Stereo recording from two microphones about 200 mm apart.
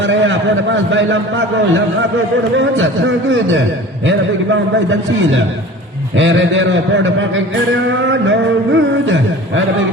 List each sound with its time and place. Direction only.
0.0 s a man's voice: 65° right (ahead or behind)
6.1 s a man's voice: 70° right (ahead or behind)
8.3 s music: 65° right (ahead or behind)